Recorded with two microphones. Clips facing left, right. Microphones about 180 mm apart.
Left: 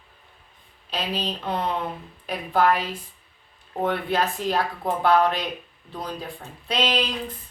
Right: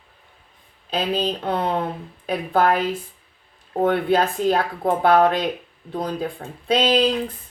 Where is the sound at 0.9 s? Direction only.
50° right (ahead or behind).